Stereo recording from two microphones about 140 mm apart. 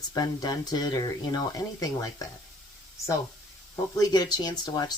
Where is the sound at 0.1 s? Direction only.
30° left (ahead or behind).